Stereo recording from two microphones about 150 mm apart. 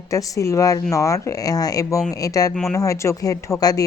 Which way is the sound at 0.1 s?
20° left (ahead or behind).